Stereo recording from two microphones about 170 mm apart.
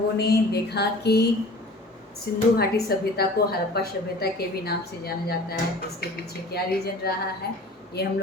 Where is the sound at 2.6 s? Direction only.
65° left (ahead or behind).